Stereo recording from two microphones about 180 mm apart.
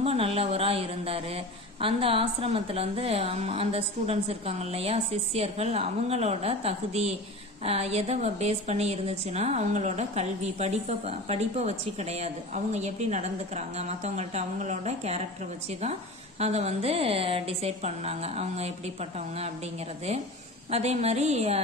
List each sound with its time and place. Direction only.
0.0 s a woman's voice: 35° right (ahead or behind)
20.7 s a woman's voice: 35° right (ahead or behind)